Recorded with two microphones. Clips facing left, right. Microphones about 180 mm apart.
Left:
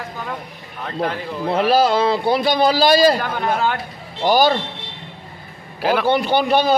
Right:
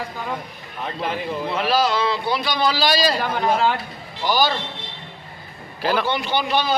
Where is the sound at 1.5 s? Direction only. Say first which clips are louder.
Left 6 dB; 50° left (ahead or behind).